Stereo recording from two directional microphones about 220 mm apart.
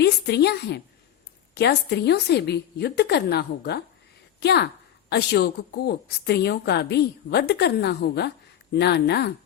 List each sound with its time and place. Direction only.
0.0 s a woman's voice: 50° left (ahead or behind)